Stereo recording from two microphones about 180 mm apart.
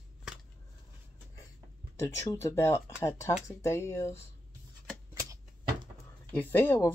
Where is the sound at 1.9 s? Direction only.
15° left (ahead or behind).